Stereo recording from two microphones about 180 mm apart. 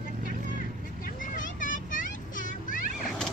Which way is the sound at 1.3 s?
45° left (ahead or behind).